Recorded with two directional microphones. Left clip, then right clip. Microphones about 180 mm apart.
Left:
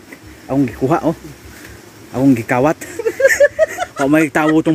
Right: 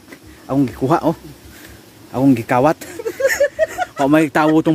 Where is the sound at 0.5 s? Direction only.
20° right (ahead or behind).